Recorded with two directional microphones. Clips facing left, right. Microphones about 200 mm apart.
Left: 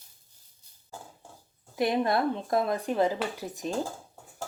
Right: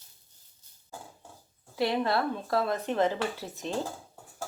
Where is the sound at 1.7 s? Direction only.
20° left (ahead or behind).